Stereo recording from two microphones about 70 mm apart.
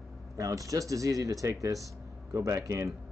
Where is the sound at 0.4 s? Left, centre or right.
Right.